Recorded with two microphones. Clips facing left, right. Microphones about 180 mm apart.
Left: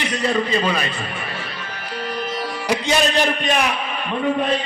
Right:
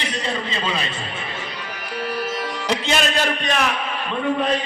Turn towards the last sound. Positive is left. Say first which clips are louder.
# left 3 dB
turn(degrees=15)  # may be behind; listen again after turning